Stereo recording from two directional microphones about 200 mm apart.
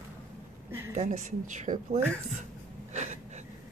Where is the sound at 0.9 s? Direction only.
35° right (ahead or behind).